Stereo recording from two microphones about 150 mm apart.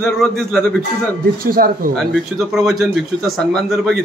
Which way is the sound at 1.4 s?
75° right (ahead or behind).